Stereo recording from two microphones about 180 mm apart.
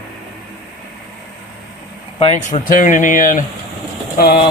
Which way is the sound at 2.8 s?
45° left (ahead or behind).